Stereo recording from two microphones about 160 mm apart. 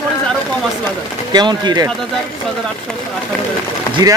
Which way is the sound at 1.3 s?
25° right (ahead or behind).